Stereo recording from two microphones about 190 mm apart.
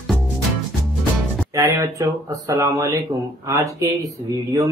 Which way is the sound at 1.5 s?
20° right (ahead or behind).